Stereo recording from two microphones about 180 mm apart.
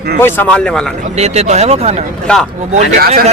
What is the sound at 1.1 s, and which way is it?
Speech, 35° right (ahead or behind).